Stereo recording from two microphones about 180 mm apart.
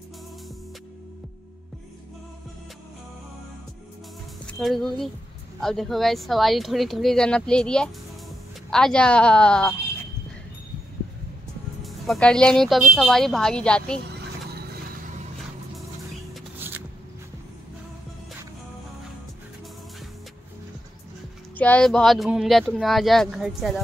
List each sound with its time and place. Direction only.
4.5 s speech: centre (ahead or behind)
11.8 s speech: 5° left (ahead or behind)
16.5 s a sound: 10° right (ahead or behind)
21.5 s speech: 5° left (ahead or behind)